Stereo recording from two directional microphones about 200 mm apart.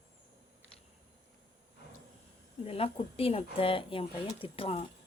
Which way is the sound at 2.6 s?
30° left (ahead or behind).